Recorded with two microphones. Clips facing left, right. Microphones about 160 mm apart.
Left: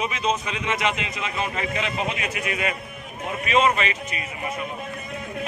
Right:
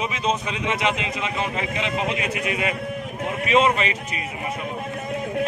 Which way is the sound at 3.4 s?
25° right (ahead or behind).